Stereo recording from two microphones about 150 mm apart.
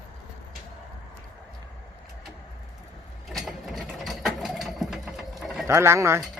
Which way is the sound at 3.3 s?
Centre (ahead or behind).